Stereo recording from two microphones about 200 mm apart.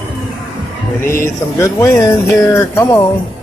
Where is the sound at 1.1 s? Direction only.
15° left (ahead or behind).